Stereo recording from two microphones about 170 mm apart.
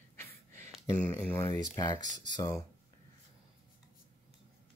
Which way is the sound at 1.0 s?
15° left (ahead or behind).